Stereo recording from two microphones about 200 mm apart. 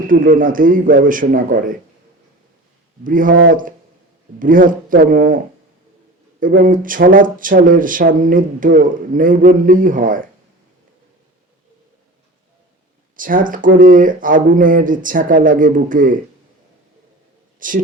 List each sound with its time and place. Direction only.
0.1 s speech: 45° right (ahead or behind)
3.0 s speech: 40° right (ahead or behind)
6.4 s speech: 40° right (ahead or behind)
13.1 s speech: 40° right (ahead or behind)
17.6 s speech: 45° right (ahead or behind)